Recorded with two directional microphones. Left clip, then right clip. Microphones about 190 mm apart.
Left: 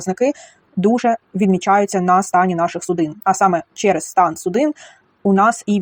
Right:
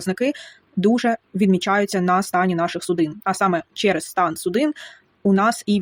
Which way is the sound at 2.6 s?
20° right (ahead or behind).